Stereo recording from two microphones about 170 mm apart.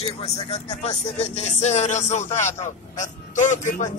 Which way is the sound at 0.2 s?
35° left (ahead or behind).